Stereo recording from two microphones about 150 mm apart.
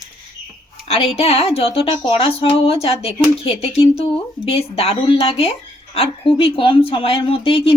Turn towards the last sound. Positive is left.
turn(degrees=40)  # may be behind; listen again after turning